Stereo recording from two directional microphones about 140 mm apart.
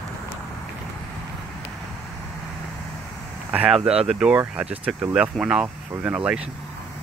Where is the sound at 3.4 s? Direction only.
10° right (ahead or behind).